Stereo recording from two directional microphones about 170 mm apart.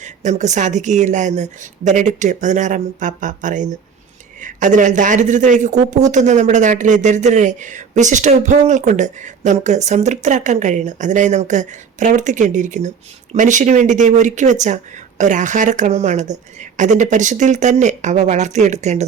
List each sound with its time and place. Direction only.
0.0 s speech: 45° right (ahead or behind)